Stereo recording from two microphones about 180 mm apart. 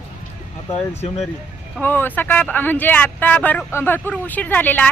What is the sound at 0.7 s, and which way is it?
Speech, 35° left (ahead or behind).